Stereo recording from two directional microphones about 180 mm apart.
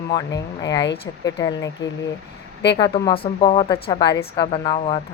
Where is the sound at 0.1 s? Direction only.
20° left (ahead or behind).